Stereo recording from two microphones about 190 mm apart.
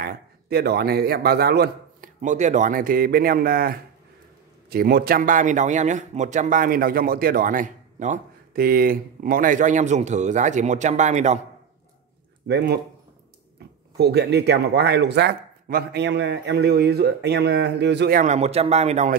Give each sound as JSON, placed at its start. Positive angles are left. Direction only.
{"t": 0.0, "sound": "a man's voice", "side_deg": -55}
{"t": 2.2, "sound": "a man's voice", "side_deg": -40}
{"t": 12.4, "sound": "speech", "side_deg": -60}
{"t": 13.9, "sound": "speech", "side_deg": -60}
{"t": 18.2, "sound": "a man's voice", "side_deg": -35}